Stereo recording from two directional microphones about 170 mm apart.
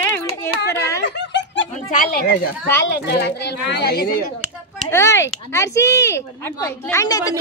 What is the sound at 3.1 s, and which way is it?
A child's voice, 80° left.